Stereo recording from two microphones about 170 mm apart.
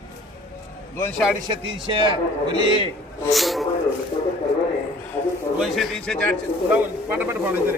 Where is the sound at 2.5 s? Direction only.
30° right (ahead or behind).